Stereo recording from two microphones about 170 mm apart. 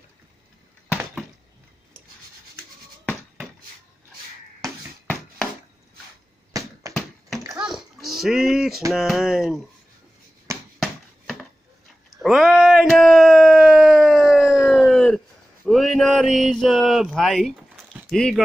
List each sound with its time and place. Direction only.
6.5 s basketball bounce: 20° right (ahead or behind)
7.3 s a sound: 20° right (ahead or behind)
7.6 s dog: centre (ahead or behind)
8.9 s speech: centre (ahead or behind)
10.8 s a sound: centre (ahead or behind)
18.1 s speech: 5° left (ahead or behind)